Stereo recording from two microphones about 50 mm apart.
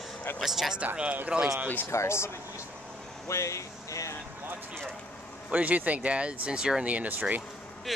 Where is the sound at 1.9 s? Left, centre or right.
Left.